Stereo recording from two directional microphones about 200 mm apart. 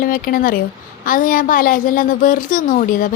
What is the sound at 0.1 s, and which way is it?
A woman's voice, 45° left (ahead or behind).